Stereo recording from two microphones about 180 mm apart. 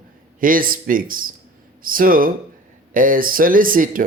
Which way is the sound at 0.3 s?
50° right (ahead or behind).